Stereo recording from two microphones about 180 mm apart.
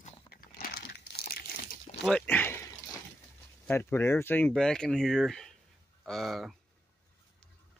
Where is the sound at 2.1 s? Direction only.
5° left (ahead or behind).